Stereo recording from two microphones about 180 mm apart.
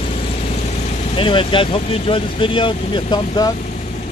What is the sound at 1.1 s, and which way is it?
Speech, 30° left (ahead or behind).